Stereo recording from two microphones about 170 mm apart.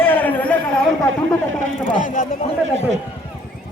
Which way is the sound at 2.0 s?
55° left (ahead or behind).